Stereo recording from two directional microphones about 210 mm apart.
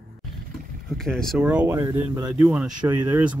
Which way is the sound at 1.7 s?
15° right (ahead or behind).